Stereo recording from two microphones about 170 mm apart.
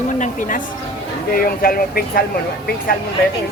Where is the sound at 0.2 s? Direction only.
50° left (ahead or behind).